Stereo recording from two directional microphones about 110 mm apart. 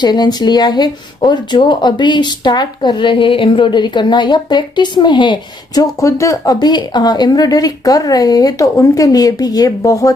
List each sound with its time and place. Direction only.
0.0 s speech: 40° left (ahead or behind)
5.9 s speech: 30° left (ahead or behind)